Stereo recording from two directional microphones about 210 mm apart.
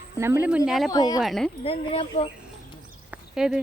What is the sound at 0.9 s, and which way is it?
Speech, 20° left (ahead or behind).